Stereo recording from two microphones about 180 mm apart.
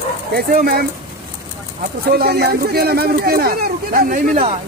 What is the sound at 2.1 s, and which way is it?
Speech, 60° right (ahead or behind).